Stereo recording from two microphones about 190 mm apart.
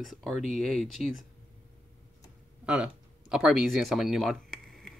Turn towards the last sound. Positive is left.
turn(degrees=0)  # may be behind; listen again after turning